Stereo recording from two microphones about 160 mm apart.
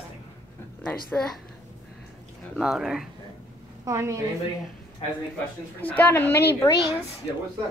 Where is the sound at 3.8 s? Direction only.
20° right (ahead or behind).